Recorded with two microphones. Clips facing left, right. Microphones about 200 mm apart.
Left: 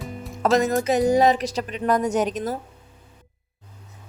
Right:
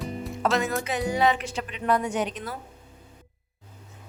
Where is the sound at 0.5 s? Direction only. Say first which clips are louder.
Left 10 dB; 40° left (ahead or behind).